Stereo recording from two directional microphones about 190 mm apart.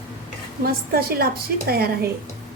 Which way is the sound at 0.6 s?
55° right (ahead or behind).